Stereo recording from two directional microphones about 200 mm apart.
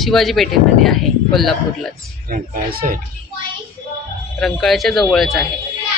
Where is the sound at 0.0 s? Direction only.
Centre (ahead or behind).